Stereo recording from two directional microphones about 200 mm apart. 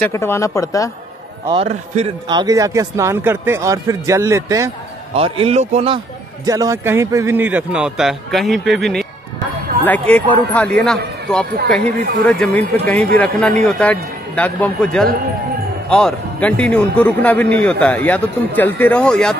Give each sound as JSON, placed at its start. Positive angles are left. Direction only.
{"t": 0.1, "sound": "a man's voice", "side_deg": 15}
{"t": 1.5, "sound": "a man's voice", "side_deg": -30}
{"t": 5.1, "sound": "speech", "side_deg": -30}
{"t": 6.4, "sound": "a man's voice", "side_deg": -15}